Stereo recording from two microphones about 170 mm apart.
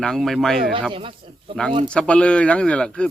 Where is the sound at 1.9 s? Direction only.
5° left (ahead or behind).